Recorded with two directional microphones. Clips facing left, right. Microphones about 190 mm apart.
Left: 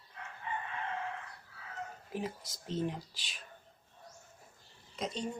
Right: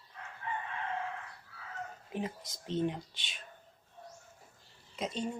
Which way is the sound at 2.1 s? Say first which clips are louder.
Right 1 dB; centre (ahead or behind).